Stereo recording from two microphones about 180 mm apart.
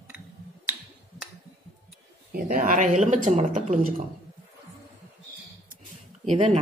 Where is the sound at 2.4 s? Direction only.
45° right (ahead or behind).